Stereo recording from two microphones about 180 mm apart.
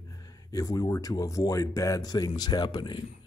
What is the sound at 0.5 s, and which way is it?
Speech, 20° left (ahead or behind).